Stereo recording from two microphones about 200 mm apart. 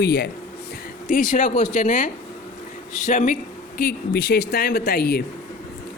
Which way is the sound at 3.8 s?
50° left (ahead or behind).